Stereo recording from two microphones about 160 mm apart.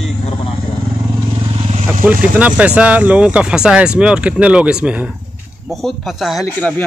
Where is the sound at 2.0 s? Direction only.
10° right (ahead or behind).